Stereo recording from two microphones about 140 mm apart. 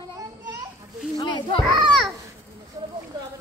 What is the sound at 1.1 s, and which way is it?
Children playing, 30° left (ahead or behind).